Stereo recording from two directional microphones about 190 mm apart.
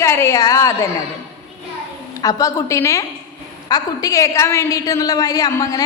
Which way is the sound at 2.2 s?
15° left (ahead or behind).